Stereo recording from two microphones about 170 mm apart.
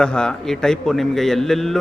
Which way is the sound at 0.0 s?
5° left (ahead or behind).